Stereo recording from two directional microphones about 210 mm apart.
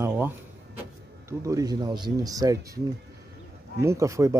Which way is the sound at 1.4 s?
15° right (ahead or behind).